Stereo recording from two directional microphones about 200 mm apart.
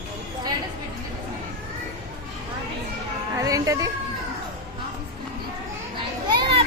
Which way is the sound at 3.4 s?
15° right (ahead or behind).